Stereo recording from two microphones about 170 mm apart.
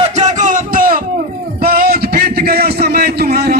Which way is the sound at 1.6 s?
65° right (ahead or behind).